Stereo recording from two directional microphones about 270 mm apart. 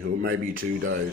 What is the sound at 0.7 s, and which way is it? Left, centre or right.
Speech, right.